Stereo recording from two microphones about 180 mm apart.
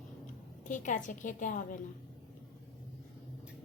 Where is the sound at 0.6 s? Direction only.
45° left (ahead or behind).